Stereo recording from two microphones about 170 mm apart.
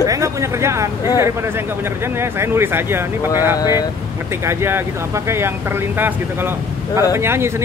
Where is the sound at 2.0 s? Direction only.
15° right (ahead or behind).